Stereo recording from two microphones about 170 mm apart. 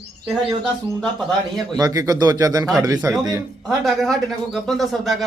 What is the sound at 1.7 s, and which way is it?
Speech, 20° right (ahead or behind).